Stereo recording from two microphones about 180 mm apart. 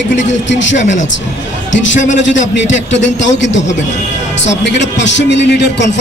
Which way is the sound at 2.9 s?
90° left.